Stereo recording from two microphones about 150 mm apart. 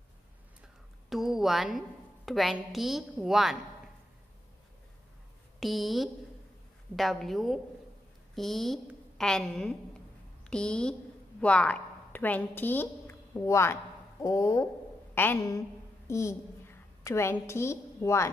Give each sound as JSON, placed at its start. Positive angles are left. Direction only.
{"t": 1.1, "sound": "a woman's voice", "side_deg": 0}
{"t": 5.6, "sound": "a woman's voice", "side_deg": 0}